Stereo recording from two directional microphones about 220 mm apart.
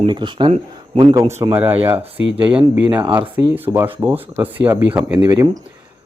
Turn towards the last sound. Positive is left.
turn(degrees=-10)  # may be behind; listen again after turning